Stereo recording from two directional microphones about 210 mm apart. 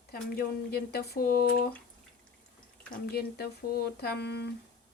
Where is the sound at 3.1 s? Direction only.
50° left (ahead or behind).